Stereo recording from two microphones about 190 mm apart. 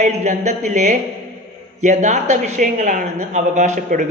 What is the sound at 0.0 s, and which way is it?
Speech, 40° right (ahead or behind).